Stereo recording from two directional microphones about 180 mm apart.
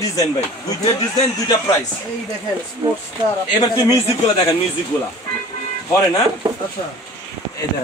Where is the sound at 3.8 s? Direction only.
20° left (ahead or behind).